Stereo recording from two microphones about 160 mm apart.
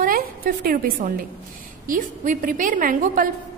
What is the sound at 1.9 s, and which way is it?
A woman's voice, 60° right (ahead or behind).